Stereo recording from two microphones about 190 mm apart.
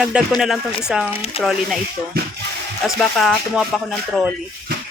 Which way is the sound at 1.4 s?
30° left (ahead or behind).